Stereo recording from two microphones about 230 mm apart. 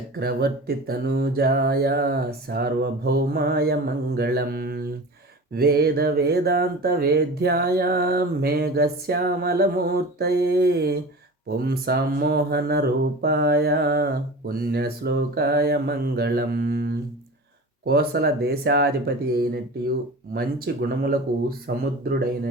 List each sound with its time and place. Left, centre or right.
0.2 s mantra: right
20.8 s speech: right